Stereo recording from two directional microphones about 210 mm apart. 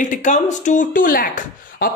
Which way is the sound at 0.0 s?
35° left (ahead or behind).